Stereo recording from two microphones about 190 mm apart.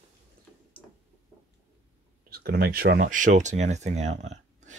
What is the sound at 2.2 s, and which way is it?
Speech, 55° right (ahead or behind).